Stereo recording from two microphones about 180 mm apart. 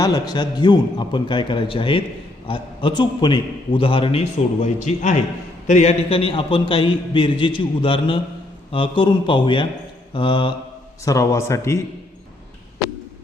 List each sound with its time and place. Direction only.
0.0 s a man's voice: 20° left (ahead or behind)